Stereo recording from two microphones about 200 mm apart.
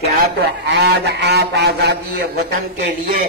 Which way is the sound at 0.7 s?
55° right (ahead or behind).